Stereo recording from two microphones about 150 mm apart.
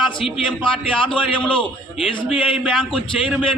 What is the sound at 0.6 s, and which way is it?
Speech, 35° left (ahead or behind).